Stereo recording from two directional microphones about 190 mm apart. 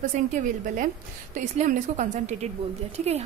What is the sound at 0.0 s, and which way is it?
A woman's voice, 40° right (ahead or behind).